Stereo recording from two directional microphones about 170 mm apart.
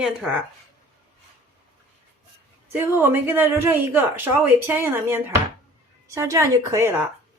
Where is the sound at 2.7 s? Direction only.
10° right (ahead or behind).